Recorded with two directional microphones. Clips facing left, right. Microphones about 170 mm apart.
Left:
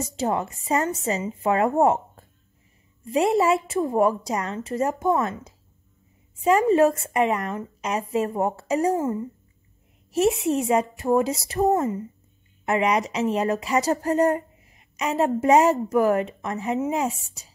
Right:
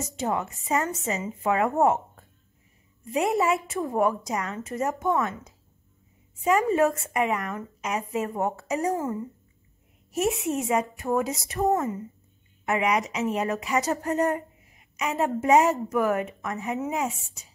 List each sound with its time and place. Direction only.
0.2 s a woman's voice: 35° left (ahead or behind)
3.1 s a woman's voice: 30° left (ahead or behind)
10.2 s a woman's voice: 30° left (ahead or behind)
17.0 s a woman's voice: 35° left (ahead or behind)